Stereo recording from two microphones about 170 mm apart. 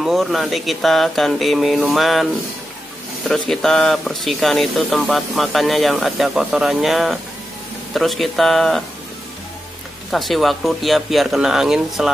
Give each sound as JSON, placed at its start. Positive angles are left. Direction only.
{"t": 0.0, "sound": "speech", "side_deg": 0}
{"t": 3.3, "sound": "speech", "side_deg": 0}
{"t": 10.1, "sound": "speech", "side_deg": 0}